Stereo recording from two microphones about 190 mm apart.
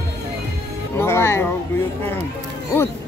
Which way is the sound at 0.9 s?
15° left (ahead or behind).